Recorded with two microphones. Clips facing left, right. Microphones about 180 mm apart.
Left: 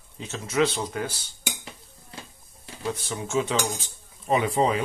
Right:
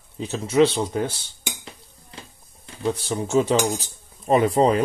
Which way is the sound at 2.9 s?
35° right (ahead or behind).